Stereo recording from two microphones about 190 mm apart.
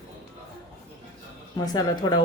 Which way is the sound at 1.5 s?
20° left (ahead or behind).